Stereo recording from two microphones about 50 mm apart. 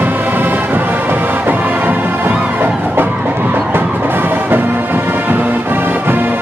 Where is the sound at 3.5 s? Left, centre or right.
Right.